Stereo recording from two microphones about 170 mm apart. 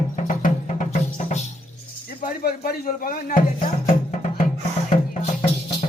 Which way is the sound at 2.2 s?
60° left (ahead or behind).